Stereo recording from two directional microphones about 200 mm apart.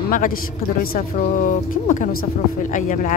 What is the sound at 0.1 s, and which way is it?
Speech, 45° left (ahead or behind).